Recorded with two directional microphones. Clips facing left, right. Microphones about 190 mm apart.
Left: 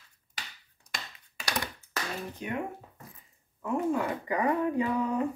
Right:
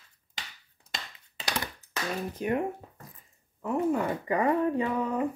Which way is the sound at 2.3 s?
40° right (ahead or behind).